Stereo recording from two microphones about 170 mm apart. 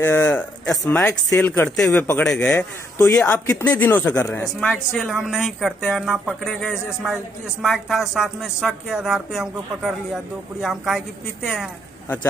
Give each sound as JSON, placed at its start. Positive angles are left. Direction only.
{"t": 0.0, "sound": "speech", "side_deg": 10}